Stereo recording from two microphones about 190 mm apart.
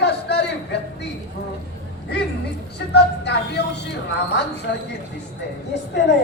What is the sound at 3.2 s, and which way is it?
Speech, 60° left (ahead or behind).